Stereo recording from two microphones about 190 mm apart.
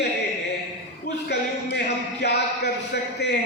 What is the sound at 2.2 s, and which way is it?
A man's voice, 60° left (ahead or behind).